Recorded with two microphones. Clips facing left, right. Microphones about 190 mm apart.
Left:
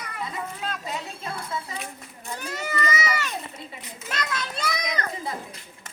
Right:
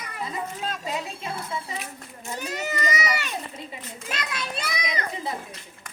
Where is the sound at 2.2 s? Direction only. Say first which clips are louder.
Right 2 dB; 20° right (ahead or behind).